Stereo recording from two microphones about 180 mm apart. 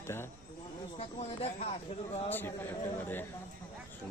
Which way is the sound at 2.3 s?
15° left (ahead or behind).